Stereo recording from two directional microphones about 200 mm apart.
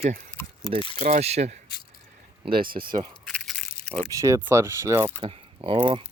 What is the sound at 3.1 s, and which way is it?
Crunch, 5° left (ahead or behind).